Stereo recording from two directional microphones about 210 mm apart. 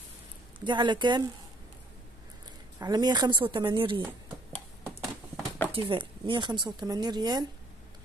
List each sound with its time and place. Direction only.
0.7 s speech: 20° right (ahead or behind)
2.8 s speech: 20° right (ahead or behind)
4.8 s a sound: 5° left (ahead or behind)
5.7 s speech: 25° right (ahead or behind)